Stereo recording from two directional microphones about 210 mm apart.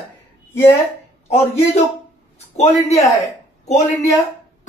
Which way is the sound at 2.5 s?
30° left (ahead or behind).